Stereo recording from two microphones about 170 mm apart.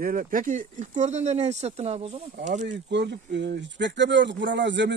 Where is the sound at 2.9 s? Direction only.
90° right.